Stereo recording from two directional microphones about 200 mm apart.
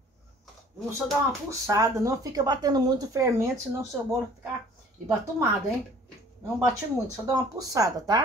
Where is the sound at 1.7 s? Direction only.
15° right (ahead or behind).